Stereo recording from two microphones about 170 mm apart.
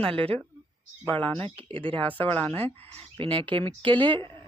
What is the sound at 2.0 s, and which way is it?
Speech, 10° left (ahead or behind).